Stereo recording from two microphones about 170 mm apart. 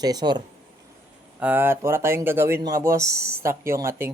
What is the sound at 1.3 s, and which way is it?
Speech, 10° right (ahead or behind).